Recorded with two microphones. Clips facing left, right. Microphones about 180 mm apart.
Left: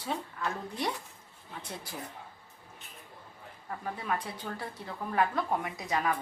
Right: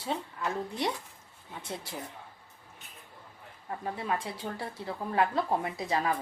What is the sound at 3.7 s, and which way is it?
Speech, 25° right (ahead or behind).